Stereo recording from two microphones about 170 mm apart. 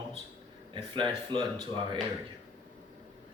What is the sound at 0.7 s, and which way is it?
Speech, 30° right (ahead or behind).